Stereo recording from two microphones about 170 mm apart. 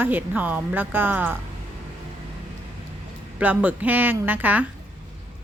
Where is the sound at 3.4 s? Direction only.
10° right (ahead or behind).